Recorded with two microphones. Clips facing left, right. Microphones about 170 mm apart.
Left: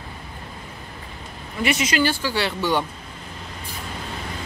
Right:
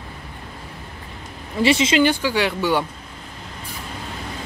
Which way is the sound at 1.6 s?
25° right (ahead or behind).